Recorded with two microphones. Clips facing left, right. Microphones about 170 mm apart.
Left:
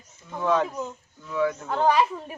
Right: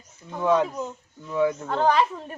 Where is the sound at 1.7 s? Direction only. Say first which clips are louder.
Even; 5° left (ahead or behind).